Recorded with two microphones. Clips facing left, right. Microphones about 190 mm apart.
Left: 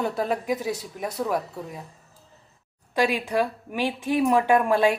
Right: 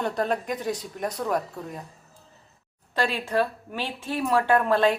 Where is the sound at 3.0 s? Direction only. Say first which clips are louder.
Left 2 dB; 15° left (ahead or behind).